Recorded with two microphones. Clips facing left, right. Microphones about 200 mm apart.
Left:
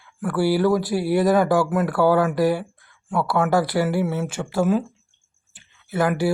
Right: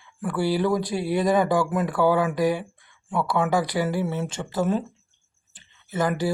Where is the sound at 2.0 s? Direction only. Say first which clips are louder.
Left 3 dB; 15° right (ahead or behind).